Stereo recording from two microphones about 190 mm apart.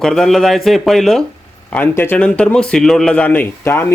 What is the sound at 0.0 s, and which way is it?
A man's voice, centre (ahead or behind).